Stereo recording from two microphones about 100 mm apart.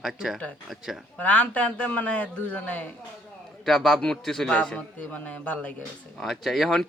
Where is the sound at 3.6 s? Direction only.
Centre (ahead or behind).